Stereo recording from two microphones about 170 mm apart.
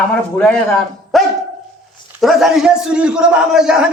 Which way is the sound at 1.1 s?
Centre (ahead or behind).